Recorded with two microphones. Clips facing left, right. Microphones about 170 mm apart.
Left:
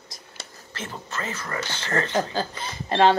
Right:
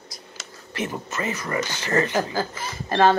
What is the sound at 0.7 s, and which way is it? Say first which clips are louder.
Speech: right 6 dB; 15° right (ahead or behind).